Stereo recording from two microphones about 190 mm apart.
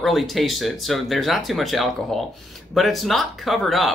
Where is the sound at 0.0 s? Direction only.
Centre (ahead or behind).